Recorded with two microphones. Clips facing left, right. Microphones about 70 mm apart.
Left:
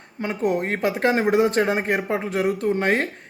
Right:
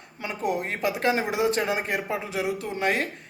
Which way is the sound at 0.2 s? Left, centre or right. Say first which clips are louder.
Left 5 dB; left.